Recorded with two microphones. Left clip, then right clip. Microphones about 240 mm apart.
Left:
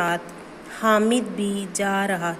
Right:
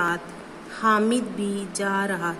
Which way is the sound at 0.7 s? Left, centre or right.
Centre.